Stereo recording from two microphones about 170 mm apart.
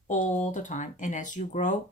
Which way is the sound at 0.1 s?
45° left (ahead or behind).